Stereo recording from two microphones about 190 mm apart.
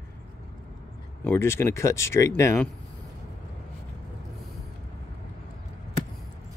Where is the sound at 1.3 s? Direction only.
15° left (ahead or behind).